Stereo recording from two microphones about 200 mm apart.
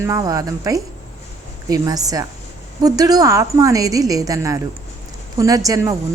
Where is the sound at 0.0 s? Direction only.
15° right (ahead or behind).